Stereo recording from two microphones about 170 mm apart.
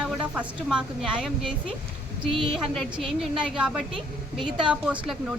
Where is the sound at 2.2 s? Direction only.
30° right (ahead or behind).